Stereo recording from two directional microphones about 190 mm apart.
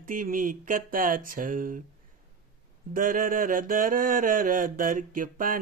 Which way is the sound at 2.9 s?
45° right (ahead or behind).